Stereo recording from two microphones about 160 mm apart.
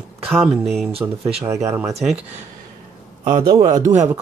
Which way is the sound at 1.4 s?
15° right (ahead or behind).